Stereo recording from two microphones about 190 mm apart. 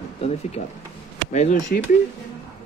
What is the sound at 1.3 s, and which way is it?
Speech, 40° left (ahead or behind).